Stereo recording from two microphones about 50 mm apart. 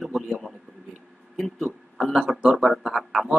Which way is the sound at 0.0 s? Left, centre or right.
Centre.